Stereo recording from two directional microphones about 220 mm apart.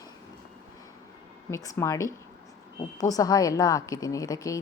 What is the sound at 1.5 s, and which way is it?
A woman's voice, 15° left (ahead or behind).